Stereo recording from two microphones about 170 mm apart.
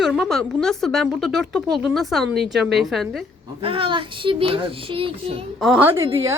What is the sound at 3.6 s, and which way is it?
A child's voice, 30° right (ahead or behind).